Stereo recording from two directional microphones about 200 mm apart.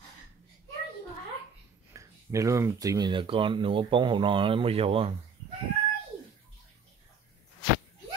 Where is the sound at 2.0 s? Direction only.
15° right (ahead or behind).